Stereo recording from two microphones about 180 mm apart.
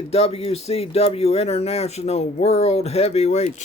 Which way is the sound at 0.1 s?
35° left (ahead or behind).